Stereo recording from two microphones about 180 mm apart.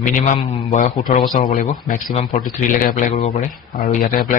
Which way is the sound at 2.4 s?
45° left (ahead or behind).